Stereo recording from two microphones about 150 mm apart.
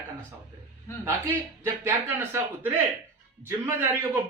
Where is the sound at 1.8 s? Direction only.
15° right (ahead or behind).